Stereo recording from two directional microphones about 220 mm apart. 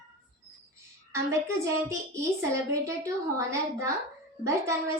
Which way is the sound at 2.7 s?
15° right (ahead or behind).